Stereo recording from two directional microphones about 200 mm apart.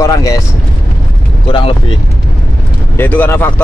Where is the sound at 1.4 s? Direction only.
25° left (ahead or behind).